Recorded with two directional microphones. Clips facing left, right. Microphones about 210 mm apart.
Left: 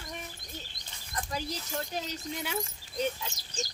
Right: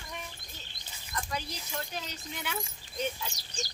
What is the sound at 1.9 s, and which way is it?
Speech, 40° left (ahead or behind).